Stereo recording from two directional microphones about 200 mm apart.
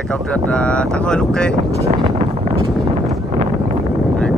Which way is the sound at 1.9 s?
35° right (ahead or behind).